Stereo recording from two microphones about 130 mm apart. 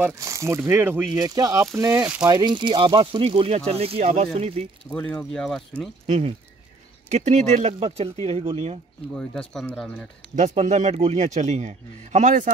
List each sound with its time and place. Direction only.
0.0 s speech: 25° right (ahead or behind)
1.1 s speech: 30° right (ahead or behind)
2.2 s speech: 35° right (ahead or behind); by 4.6 s 50° right (ahead or behind)
4.9 s speech: 10° left (ahead or behind)
6.0 s speech: 55° right (ahead or behind)
9.3 s speech: 5° left (ahead or behind)
10.3 s a man's voice: 60° right (ahead or behind); by 12.5 s 80° right